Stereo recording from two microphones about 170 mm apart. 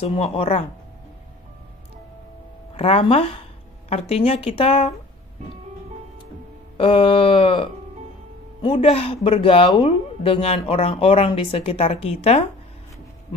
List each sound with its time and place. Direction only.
0.0 s speech: 35° left (ahead or behind)
2.7 s speech: 35° left (ahead or behind)
6.8 s speech: 30° left (ahead or behind)
8.6 s speech: 35° left (ahead or behind)